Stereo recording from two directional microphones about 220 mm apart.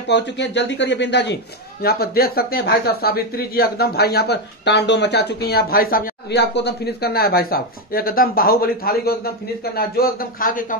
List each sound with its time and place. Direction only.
0.1 s a man's voice: 50° left (ahead or behind)